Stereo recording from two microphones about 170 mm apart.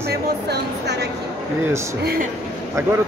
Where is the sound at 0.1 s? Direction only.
75° right (ahead or behind).